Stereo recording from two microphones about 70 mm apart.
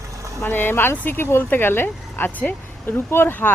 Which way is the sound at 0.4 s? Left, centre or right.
Left.